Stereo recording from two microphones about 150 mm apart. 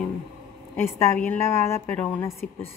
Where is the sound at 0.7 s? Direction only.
15° left (ahead or behind).